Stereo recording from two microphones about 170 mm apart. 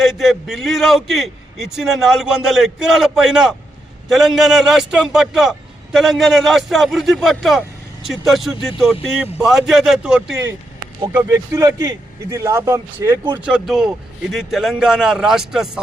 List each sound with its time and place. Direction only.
0.0 s a man's voice: centre (ahead or behind)
11.1 s speech: 15° right (ahead or behind)
13.5 s a man's voice: centre (ahead or behind)